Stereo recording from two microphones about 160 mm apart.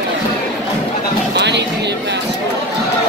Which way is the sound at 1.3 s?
90° right.